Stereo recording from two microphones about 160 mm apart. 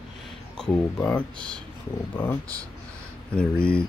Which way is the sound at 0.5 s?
5° left (ahead or behind).